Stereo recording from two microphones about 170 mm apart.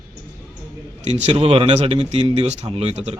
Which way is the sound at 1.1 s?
40° right (ahead or behind).